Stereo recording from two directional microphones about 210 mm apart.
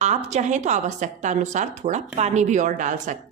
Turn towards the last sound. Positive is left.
turn(degrees=-35)  # may be behind; listen again after turning